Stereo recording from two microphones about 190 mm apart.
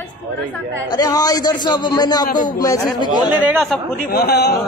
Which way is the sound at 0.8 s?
20° left (ahead or behind).